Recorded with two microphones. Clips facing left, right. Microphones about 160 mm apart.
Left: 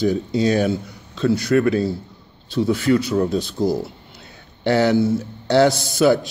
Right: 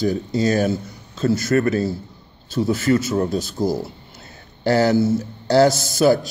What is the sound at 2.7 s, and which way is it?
Speech, 45° right (ahead or behind).